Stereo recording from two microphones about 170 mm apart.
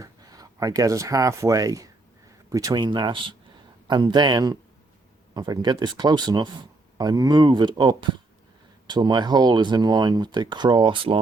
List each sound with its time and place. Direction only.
0.0 s speech: 20° right (ahead or behind)